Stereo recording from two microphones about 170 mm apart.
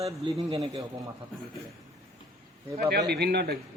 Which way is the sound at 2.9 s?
75° right (ahead or behind).